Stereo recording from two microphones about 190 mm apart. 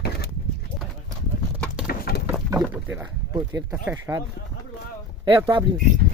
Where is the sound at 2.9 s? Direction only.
20° right (ahead or behind).